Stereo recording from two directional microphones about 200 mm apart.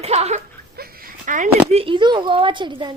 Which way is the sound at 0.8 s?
50° right (ahead or behind).